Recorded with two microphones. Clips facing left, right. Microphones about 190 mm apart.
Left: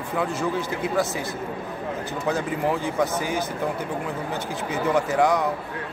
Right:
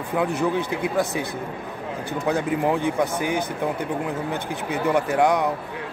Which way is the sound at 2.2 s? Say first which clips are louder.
Right 3 dB; 15° right (ahead or behind).